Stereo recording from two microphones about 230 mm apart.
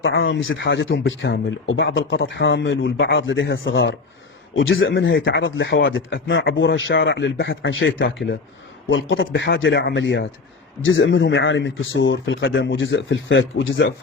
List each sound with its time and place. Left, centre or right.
0.0 s speech: left